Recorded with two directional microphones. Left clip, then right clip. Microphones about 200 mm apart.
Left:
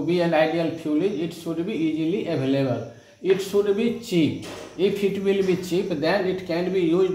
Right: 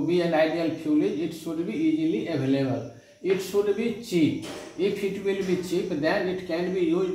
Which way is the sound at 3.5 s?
35° left (ahead or behind).